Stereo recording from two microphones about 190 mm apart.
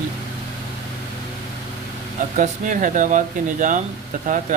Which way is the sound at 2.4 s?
45° right (ahead or behind).